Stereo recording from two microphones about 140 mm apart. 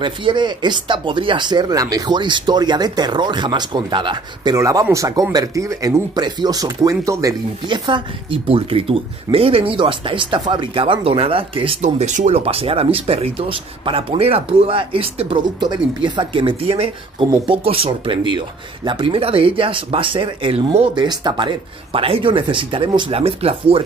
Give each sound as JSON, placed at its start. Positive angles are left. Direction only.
{"t": 0.0, "sound": "speech", "side_deg": -35}
{"t": 4.6, "sound": "speech", "side_deg": -25}
{"t": 7.6, "sound": "speech", "side_deg": -35}
{"t": 11.8, "sound": "speech", "side_deg": -60}